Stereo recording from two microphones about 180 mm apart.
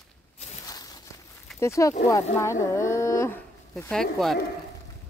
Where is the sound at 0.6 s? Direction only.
20° left (ahead or behind).